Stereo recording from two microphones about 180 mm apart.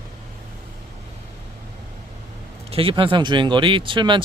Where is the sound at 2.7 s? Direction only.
30° right (ahead or behind).